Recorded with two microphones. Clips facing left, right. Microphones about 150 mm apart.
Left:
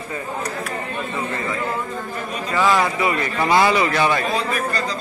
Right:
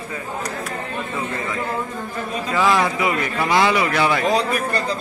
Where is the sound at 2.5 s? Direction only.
10° right (ahead or behind).